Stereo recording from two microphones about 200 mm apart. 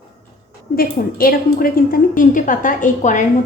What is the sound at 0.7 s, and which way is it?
A woman's voice, 45° left (ahead or behind).